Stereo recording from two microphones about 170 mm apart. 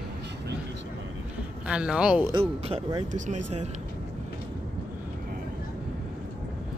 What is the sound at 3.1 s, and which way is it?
Speech, 45° right (ahead or behind).